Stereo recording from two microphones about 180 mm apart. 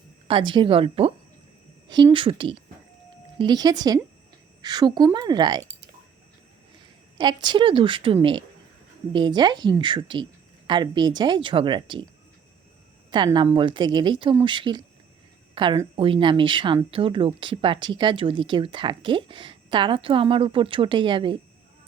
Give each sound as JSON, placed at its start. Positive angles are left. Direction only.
{"t": 0.3, "sound": "speech", "side_deg": -25}
{"t": 7.2, "sound": "speech", "side_deg": -25}
{"t": 13.1, "sound": "speech", "side_deg": -25}